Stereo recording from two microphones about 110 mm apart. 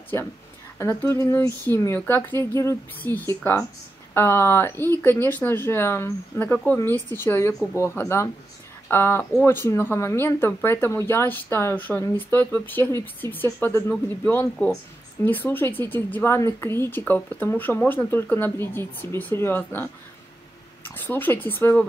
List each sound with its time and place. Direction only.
0.1 s speech: 25° left (ahead or behind)
13.7 s speech: 30° left (ahead or behind)
14.0 s speech: 20° left (ahead or behind)